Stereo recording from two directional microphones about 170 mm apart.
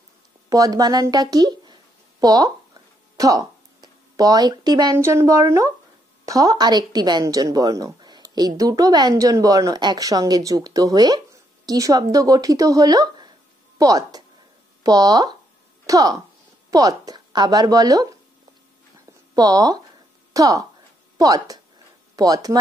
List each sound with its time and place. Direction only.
0.5 s a sound: 20° right (ahead or behind)
4.9 s a woman's voice: 15° right (ahead or behind)
19.3 s a woman's voice: 20° right (ahead or behind)